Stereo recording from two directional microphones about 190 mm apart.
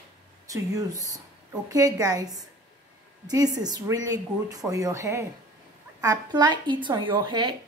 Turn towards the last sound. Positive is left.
turn(degrees=-25)  # may be behind; listen again after turning